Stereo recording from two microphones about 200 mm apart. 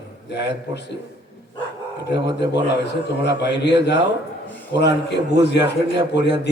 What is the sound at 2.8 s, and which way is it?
A man's voice, 60° left (ahead or behind).